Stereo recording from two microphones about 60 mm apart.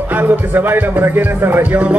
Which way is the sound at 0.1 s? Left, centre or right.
Right.